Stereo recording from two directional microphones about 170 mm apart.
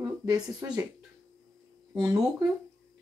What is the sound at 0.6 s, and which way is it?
Speech, 10° right (ahead or behind).